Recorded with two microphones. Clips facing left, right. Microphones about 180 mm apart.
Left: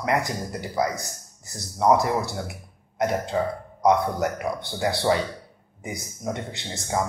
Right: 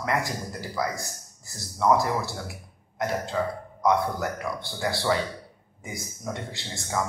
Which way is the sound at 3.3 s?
30° left (ahead or behind).